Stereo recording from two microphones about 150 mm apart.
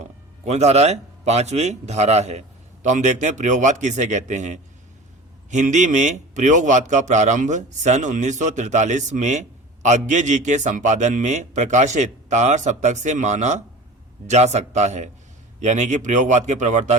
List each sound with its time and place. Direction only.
0.0 s a man's voice: 45° right (ahead or behind)